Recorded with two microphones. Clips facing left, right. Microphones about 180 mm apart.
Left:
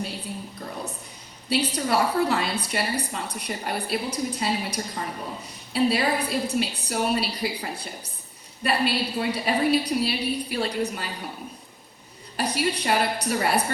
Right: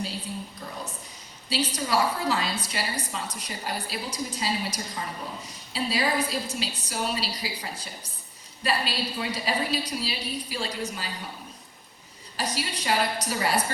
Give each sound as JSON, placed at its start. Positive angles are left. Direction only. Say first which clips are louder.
{"t": 1.5, "sound": "a woman's voice", "louder": "left 4 dB", "side_deg": 60}
{"t": 12.4, "sound": "a woman's voice", "louder": "left 6 dB", "side_deg": 55}